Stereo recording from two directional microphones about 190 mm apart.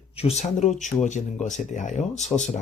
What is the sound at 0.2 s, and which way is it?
Speech, 35° left (ahead or behind).